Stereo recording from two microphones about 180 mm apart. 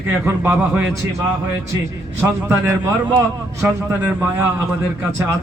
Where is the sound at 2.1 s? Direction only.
15° right (ahead or behind).